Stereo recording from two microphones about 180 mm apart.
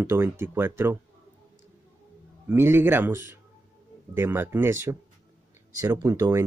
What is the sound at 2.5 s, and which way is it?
Speech, 10° right (ahead or behind).